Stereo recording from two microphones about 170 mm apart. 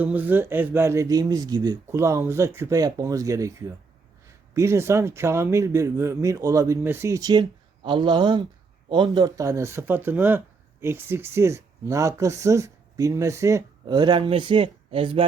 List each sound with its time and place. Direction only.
0.0 s speech: 10° right (ahead or behind); by 15.2 s 30° right (ahead or behind)